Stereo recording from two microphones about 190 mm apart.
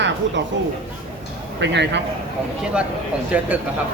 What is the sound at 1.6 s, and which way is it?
Speech, 65° right (ahead or behind).